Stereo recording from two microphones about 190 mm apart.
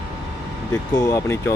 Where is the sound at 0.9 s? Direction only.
15° left (ahead or behind).